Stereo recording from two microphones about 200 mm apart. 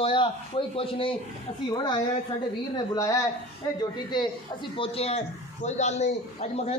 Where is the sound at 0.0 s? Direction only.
25° left (ahead or behind).